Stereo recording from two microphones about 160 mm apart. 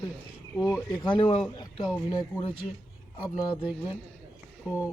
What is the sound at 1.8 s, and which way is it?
Speech, 30° left (ahead or behind).